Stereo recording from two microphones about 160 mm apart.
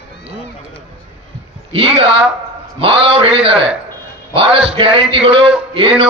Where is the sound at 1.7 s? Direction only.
35° right (ahead or behind).